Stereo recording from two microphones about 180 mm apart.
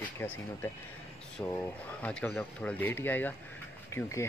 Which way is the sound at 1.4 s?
10° left (ahead or behind).